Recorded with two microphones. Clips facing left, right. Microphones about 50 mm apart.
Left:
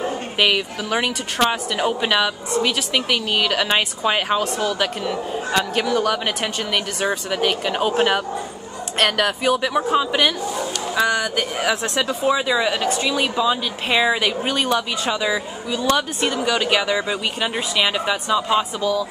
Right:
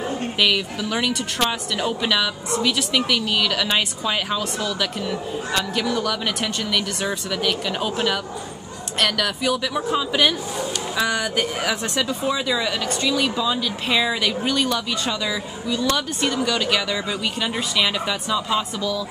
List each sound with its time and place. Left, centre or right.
0.4 s speech: centre
9.0 s speech: left
11.0 s speech: centre